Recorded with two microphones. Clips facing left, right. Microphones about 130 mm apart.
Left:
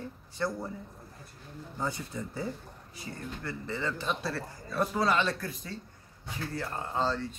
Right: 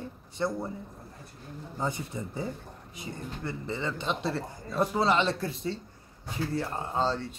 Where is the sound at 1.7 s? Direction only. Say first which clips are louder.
Right 2 dB; 20° right (ahead or behind).